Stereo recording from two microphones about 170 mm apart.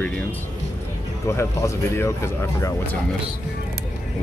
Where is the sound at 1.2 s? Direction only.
15° left (ahead or behind).